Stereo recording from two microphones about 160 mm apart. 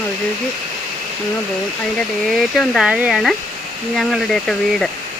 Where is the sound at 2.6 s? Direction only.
5° right (ahead or behind).